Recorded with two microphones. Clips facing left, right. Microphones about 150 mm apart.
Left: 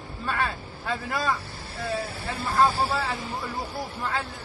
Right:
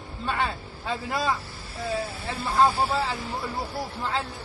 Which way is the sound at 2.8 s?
30° right (ahead or behind).